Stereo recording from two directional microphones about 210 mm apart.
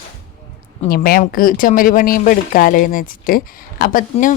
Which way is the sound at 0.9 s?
45° left (ahead or behind).